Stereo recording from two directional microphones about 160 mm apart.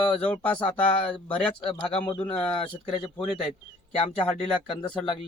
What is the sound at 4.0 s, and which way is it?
Speech, 40° left (ahead or behind).